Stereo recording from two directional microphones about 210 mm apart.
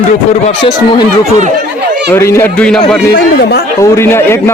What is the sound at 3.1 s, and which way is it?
Speech, 50° left (ahead or behind).